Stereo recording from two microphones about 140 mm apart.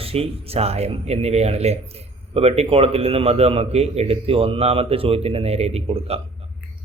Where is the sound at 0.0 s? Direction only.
45° right (ahead or behind).